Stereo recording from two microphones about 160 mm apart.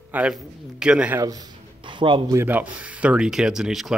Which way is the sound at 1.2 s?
25° right (ahead or behind).